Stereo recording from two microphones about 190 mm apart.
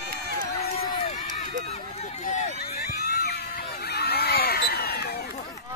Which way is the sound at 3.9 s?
55° left (ahead or behind).